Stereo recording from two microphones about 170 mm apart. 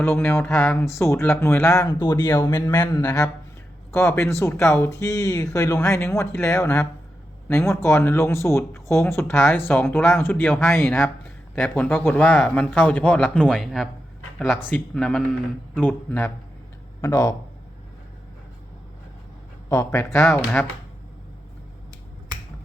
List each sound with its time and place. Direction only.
0.0 s a man's voice: 15° left (ahead or behind)
19.7 s a man's voice: 15° left (ahead or behind)
20.1 s a man's voice: centre (ahead or behind)